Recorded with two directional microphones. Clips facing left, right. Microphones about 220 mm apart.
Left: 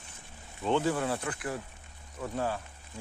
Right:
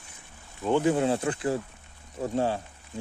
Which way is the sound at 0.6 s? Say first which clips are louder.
Right 4 dB; 10° right (ahead or behind).